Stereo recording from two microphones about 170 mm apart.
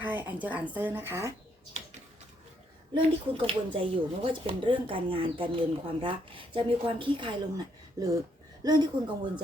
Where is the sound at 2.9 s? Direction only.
30° right (ahead or behind).